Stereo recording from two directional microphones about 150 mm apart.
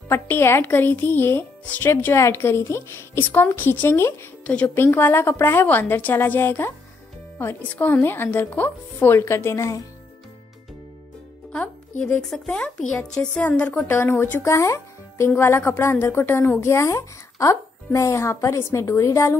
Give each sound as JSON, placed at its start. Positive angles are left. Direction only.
{"t": 0.1, "sound": "speech", "side_deg": 15}
{"t": 12.0, "sound": "a woman's voice", "side_deg": 5}